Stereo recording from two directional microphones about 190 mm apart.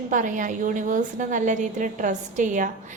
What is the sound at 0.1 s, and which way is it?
A woman's voice, 45° right (ahead or behind).